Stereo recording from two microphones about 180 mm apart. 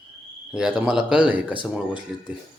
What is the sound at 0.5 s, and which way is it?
Speech, 5° right (ahead or behind).